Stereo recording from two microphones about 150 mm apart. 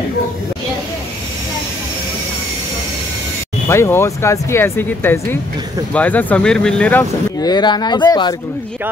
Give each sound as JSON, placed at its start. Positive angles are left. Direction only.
{"t": 3.6, "sound": "speech", "side_deg": 15}
{"t": 7.3, "sound": "speech", "side_deg": 25}